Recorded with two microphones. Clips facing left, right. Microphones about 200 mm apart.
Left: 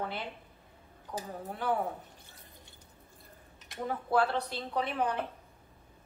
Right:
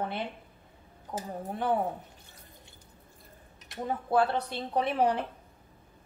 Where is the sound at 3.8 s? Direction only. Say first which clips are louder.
Right 2 dB; 20° right (ahead or behind).